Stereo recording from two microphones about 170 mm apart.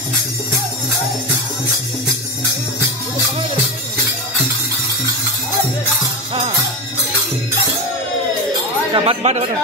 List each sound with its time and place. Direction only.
8.9 s speech: 35° right (ahead or behind)